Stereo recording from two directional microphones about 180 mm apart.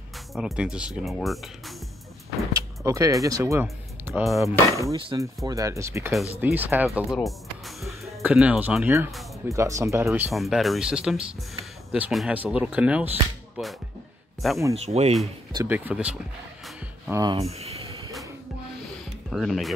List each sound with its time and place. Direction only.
0.3 s speech: centre (ahead or behind)
2.5 s speech: 20° right (ahead or behind)
4.0 s speech: 5° right (ahead or behind)
4.5 s speech: 15° right (ahead or behind)
10.3 s speech: centre (ahead or behind)
14.7 s speech: 35° right (ahead or behind)
15.5 s speech: 15° right (ahead or behind)
17.1 s speech: 20° right (ahead or behind)
17.4 s a sound: 35° right (ahead or behind)
19.3 s speech: centre (ahead or behind)